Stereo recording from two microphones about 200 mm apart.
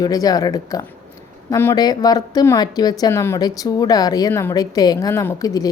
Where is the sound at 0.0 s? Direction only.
20° left (ahead or behind).